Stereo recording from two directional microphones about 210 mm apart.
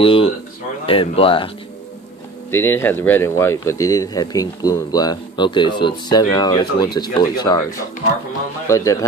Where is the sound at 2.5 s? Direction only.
10° left (ahead or behind).